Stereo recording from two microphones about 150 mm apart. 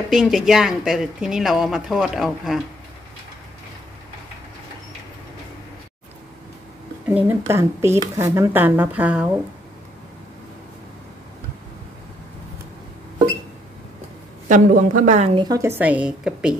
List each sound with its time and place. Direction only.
0.1 s speech: 5° right (ahead or behind)
7.1 s speech: 15° right (ahead or behind)
14.5 s a woman's voice: 60° right (ahead or behind)
15.3 s speech: 25° right (ahead or behind); by 16.5 s 5° right (ahead or behind)